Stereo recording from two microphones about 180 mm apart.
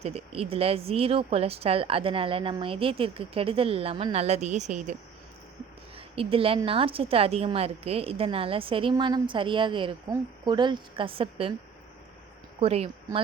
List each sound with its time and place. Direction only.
0.0 s speech: 35° right (ahead or behind)
6.1 s speech: 30° right (ahead or behind)
12.5 s speech: 35° right (ahead or behind)